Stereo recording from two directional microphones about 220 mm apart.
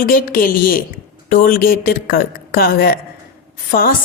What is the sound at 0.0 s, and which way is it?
A woman's voice, 40° left (ahead or behind).